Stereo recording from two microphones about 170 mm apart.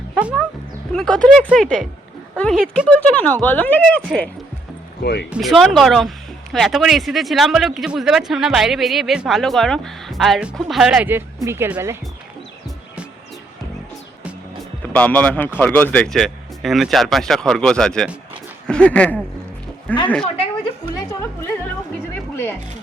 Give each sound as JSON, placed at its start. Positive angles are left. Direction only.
{"t": 0.1, "sound": "music", "side_deg": -5}
{"t": 0.9, "sound": "speech", "side_deg": 5}
{"t": 5.4, "sound": "speech", "side_deg": 0}
{"t": 14.9, "sound": "speech", "side_deg": 5}
{"t": 20.2, "sound": "a sound", "side_deg": 35}
{"t": 21.1, "sound": "music", "side_deg": 20}